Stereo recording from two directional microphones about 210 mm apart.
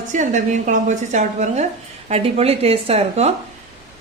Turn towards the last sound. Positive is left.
turn(degrees=-30)  # may be behind; listen again after turning